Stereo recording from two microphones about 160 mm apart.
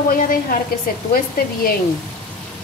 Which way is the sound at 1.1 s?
65° left (ahead or behind).